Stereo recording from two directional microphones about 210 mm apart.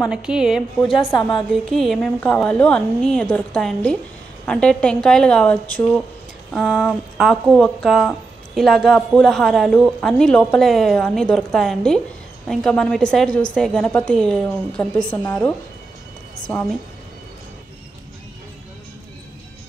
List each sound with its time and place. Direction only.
0.1 s speech: 5° right (ahead or behind)